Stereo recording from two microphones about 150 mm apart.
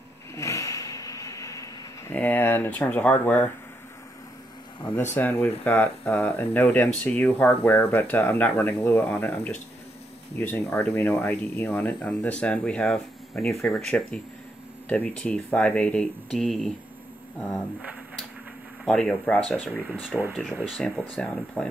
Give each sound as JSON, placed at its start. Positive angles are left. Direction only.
{"t": 0.4, "sound": "a sound", "side_deg": 20}
{"t": 5.1, "sound": "speech", "side_deg": 10}
{"t": 18.9, "sound": "speech", "side_deg": 5}
{"t": 19.9, "sound": "speech", "side_deg": -5}
{"t": 20.7, "sound": "speech", "side_deg": 10}